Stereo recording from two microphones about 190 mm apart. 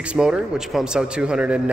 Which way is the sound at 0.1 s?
5° right (ahead or behind).